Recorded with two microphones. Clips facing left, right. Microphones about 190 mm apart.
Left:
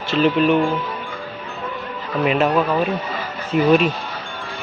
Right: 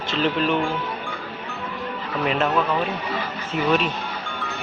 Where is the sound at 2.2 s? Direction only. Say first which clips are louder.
Left 5 dB; 10° left (ahead or behind).